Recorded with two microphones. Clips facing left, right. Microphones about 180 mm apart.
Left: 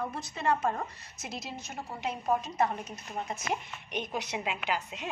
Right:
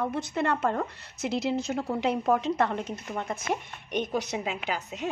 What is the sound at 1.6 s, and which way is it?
Speech, 80° right.